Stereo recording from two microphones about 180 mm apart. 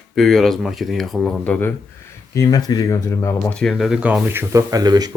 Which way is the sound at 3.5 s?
Centre (ahead or behind).